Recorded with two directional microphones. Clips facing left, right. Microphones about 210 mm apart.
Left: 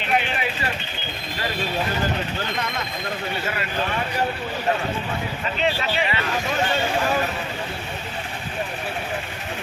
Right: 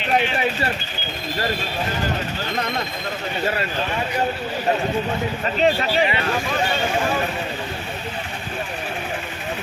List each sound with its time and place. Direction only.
3.4 s speech: 30° right (ahead or behind)
5.5 s speech: 40° right (ahead or behind)